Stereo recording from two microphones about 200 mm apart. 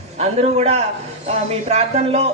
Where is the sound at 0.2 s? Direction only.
30° right (ahead or behind).